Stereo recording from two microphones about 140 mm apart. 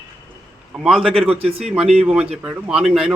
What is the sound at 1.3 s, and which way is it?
Speech, 45° right (ahead or behind).